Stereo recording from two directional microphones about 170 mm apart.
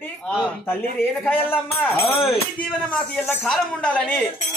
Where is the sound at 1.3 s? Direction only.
10° left (ahead or behind).